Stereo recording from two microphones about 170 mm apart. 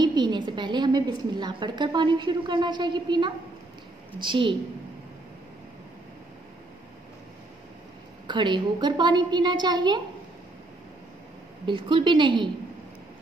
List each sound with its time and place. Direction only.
0.0 s a woman's voice: 25° right (ahead or behind)
8.3 s a woman's voice: 25° right (ahead or behind)
11.6 s a woman's voice: 30° right (ahead or behind)